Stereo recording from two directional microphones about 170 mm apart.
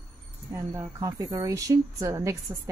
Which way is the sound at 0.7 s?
20° right (ahead or behind).